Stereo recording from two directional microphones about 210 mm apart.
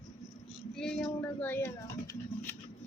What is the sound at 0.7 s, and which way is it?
Child singing, 5° left (ahead or behind).